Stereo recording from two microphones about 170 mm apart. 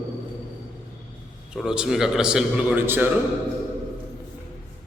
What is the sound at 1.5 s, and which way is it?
A man's voice, 5° right (ahead or behind).